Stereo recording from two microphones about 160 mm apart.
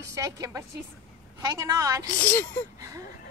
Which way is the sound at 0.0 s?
20° right (ahead or behind).